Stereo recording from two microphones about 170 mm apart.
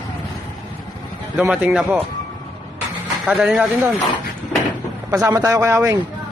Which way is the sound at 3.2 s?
5° right (ahead or behind).